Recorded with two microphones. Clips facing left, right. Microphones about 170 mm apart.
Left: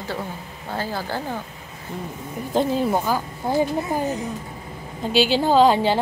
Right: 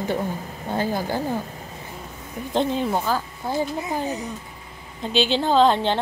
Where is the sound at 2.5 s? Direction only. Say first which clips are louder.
Left 2 dB; 5° left (ahead or behind).